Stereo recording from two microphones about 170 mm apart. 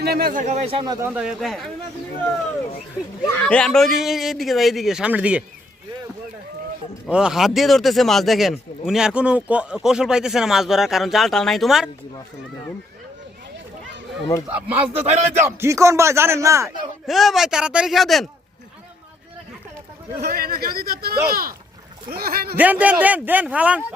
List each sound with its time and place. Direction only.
0.0 s a man's voice: 65° right (ahead or behind)
0.4 s speech: 40° right (ahead or behind)
1.0 s speech: 5° right (ahead or behind)
3.4 s speech: 5° left (ahead or behind)
7.1 s speech: 5° right (ahead or behind)
14.4 s speech: 10° right (ahead or behind)
14.9 s speech: 40° right (ahead or behind)
15.4 s speech: 15° right (ahead or behind)
17.1 s speech: centre (ahead or behind)
20.2 s a man's voice: 60° right (ahead or behind)
22.5 s speech: 10° right (ahead or behind)